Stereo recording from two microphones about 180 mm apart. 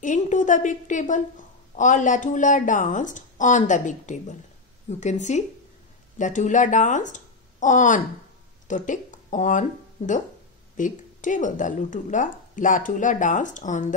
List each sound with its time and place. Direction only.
0.0 s a woman's voice: 45° left (ahead or behind)